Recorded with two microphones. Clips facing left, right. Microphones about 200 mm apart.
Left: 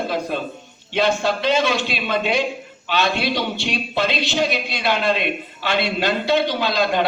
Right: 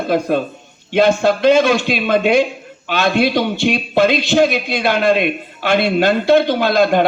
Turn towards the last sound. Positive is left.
turn(degrees=-50)  # may be behind; listen again after turning